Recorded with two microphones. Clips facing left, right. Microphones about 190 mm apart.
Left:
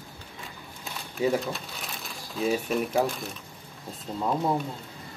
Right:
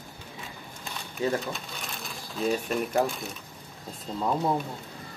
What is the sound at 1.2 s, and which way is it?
Speech, 5° left (ahead or behind).